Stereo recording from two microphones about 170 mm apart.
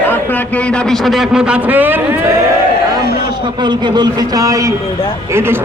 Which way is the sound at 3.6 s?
25° right (ahead or behind).